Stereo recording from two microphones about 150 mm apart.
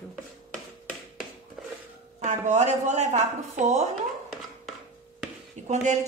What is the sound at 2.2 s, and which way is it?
A woman's voice, 50° right (ahead or behind).